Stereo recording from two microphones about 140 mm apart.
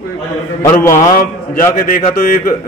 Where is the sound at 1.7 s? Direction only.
75° left (ahead or behind).